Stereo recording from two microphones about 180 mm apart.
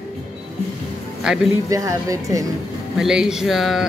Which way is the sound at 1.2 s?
Centre (ahead or behind).